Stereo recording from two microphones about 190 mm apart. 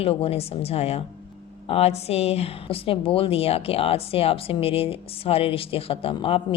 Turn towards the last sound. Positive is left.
turn(degrees=30)  # may be behind; listen again after turning